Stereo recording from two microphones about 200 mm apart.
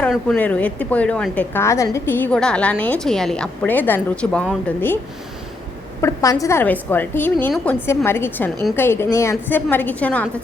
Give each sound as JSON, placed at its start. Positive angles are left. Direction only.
{"t": 0.0, "sound": "a woman's voice", "side_deg": 5}
{"t": 6.0, "sound": "a woman's voice", "side_deg": 15}